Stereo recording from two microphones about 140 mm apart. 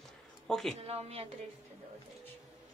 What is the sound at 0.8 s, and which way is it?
Speech, 45° right (ahead or behind).